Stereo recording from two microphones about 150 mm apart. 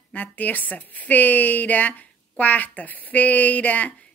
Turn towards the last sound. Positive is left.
turn(degrees=10)  # may be behind; listen again after turning